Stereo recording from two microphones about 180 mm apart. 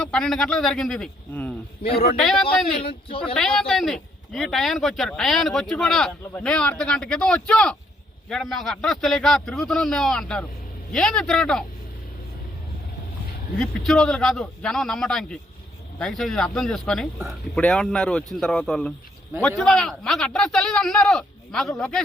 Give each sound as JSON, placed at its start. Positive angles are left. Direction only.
{"t": 0.0, "sound": "speech", "side_deg": 5}
{"t": 1.8, "sound": "a man's voice", "side_deg": 30}
{"t": 2.1, "sound": "speech", "side_deg": 0}
{"t": 2.8, "sound": "speech", "side_deg": 30}
{"t": 3.3, "sound": "speech", "side_deg": 5}
{"t": 13.6, "sound": "speech", "side_deg": 0}